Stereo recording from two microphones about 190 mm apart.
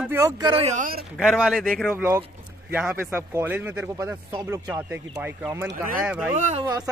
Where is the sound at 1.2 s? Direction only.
Centre (ahead or behind).